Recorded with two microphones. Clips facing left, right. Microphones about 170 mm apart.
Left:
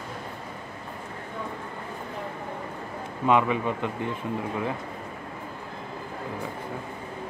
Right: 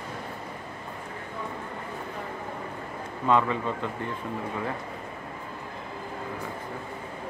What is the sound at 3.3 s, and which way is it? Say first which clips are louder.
Speech: left 2 dB; 15° left (ahead or behind).